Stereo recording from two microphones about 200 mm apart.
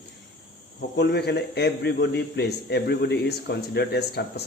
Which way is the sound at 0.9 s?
55° left (ahead or behind).